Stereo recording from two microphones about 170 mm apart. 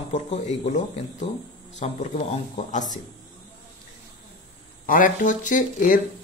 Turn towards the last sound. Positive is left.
turn(degrees=50)  # may be behind; listen again after turning